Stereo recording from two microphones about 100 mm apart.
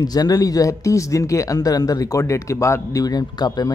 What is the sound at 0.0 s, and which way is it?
Speech, 40° left (ahead or behind).